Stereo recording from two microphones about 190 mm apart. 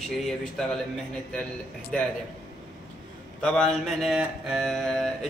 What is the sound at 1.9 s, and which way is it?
Speech, 5° left (ahead or behind).